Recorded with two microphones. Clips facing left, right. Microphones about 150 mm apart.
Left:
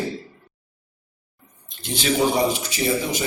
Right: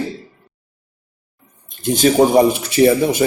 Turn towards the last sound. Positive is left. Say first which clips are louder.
# right 10 dB
turn(degrees=-55)  # may be behind; listen again after turning